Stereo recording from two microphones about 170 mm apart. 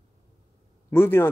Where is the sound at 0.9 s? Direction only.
15° left (ahead or behind).